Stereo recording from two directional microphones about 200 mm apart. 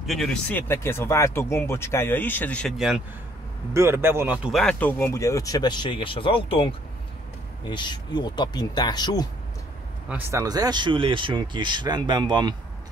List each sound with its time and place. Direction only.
0.0 s speech: centre (ahead or behind)
3.7 s speech: 10° right (ahead or behind); by 9.3 s 20° left (ahead or behind)
10.0 s speech: 10° right (ahead or behind)